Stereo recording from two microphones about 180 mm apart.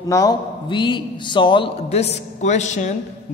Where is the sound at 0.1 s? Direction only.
20° left (ahead or behind).